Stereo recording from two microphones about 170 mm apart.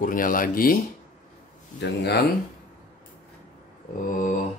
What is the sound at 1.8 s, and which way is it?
Speech, 75° left (ahead or behind).